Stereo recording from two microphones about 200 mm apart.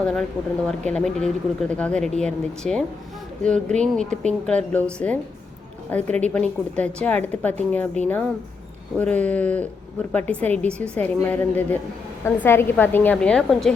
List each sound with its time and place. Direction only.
0.0 s a woman's voice: 5° left (ahead or behind)